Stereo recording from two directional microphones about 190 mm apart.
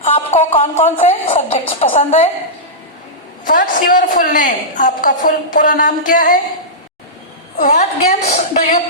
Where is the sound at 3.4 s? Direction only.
45° left (ahead or behind).